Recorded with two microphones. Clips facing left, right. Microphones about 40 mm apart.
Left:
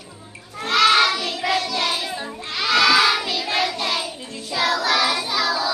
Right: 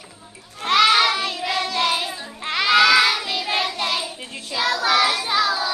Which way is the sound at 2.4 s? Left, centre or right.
Right.